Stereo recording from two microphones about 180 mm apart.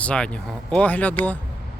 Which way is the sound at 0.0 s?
5° left (ahead or behind).